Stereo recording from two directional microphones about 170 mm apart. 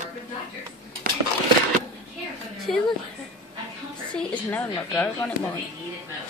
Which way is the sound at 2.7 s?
Centre (ahead or behind).